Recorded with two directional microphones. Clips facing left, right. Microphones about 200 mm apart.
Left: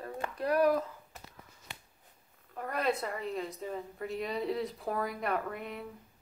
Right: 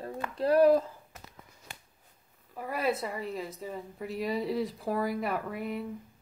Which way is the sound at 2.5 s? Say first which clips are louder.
Right 1 dB; 5° right (ahead or behind).